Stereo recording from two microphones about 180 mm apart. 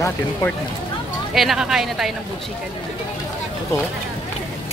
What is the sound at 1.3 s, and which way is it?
Speech, centre (ahead or behind).